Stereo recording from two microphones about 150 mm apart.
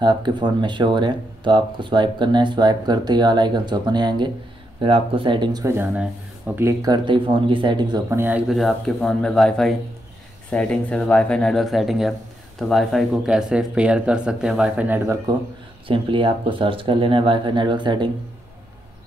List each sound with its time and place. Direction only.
0.0 s speech: 30° right (ahead or behind); by 6.7 s 10° right (ahead or behind)
6.8 s speech: 30° right (ahead or behind)
8.1 s speech: 15° right (ahead or behind)
15.9 s speech: 35° right (ahead or behind)